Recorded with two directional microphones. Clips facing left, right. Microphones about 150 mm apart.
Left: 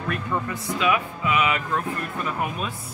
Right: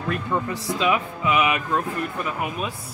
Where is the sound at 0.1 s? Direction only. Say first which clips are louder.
Right 2 dB; 25° right (ahead or behind).